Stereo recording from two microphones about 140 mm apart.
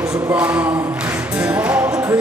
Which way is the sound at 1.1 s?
10° right (ahead or behind).